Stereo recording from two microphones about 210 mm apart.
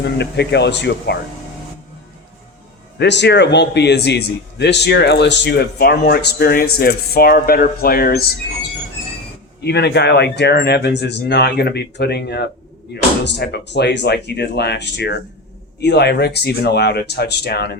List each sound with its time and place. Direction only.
0.0 s a man's voice: 55° left (ahead or behind)
3.0 s a man's voice: 55° left (ahead or behind)
9.6 s a man's voice: 50° left (ahead or behind)